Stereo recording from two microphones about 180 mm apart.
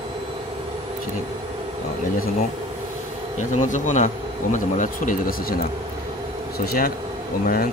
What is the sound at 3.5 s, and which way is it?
Speech, 45° left (ahead or behind).